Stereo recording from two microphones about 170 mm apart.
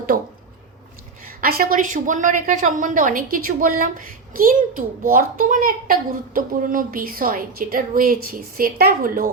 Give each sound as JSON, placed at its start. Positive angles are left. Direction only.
{"t": 0.1, "sound": "a woman's voice", "side_deg": -65}
{"t": 1.4, "sound": "a woman's voice", "side_deg": -60}